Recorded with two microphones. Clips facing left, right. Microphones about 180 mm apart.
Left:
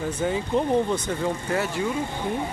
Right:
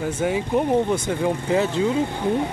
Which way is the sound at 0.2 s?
10° right (ahead or behind).